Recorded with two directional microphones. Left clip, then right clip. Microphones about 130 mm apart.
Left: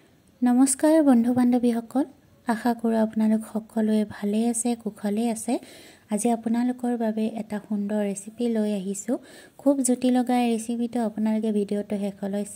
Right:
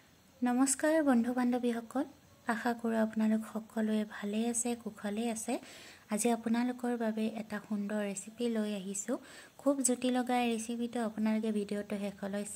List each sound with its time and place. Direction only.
0.4 s a woman's voice: 30° left (ahead or behind)
6.0 s a woman's voice: 15° left (ahead or behind)